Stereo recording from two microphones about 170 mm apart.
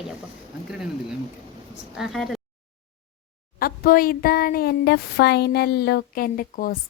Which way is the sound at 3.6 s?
55° left (ahead or behind).